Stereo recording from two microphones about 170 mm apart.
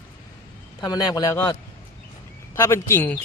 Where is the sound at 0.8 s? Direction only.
25° left (ahead or behind).